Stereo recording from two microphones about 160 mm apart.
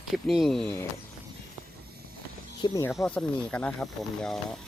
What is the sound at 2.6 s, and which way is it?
Speech, 30° left (ahead or behind).